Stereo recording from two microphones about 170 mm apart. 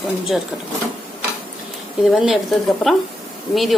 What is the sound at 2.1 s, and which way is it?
Speech, centre (ahead or behind).